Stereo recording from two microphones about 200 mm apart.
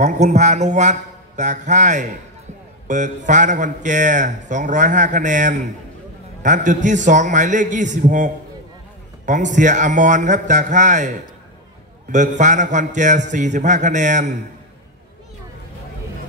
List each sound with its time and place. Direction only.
0.0 s speech: 35° right (ahead or behind)